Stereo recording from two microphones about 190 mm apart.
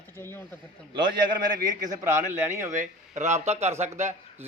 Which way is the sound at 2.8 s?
35° right (ahead or behind).